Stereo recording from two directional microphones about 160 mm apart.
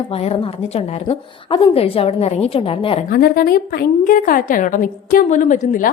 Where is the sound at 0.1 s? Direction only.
40° left (ahead or behind).